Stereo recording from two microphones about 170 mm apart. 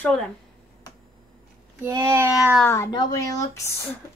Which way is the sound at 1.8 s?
15° right (ahead or behind).